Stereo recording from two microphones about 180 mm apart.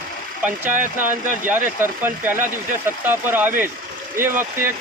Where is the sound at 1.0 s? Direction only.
10° right (ahead or behind).